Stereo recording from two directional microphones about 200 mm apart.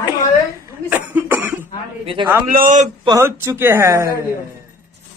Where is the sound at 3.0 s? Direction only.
15° right (ahead or behind).